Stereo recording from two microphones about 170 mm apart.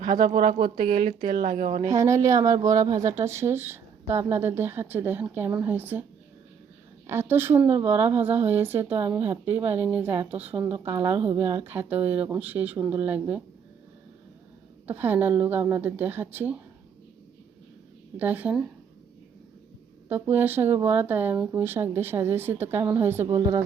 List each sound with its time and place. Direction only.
0.0 s speech: 45° right (ahead or behind)
1.9 s a woman's voice: 20° right (ahead or behind)
7.1 s speech: 15° right (ahead or behind)
9.6 s speech: 35° right (ahead or behind)
9.8 s speech: 10° right (ahead or behind)
14.8 s speech: 10° right (ahead or behind)
18.2 s speech: 10° right (ahead or behind)
20.1 s speech: 10° right (ahead or behind)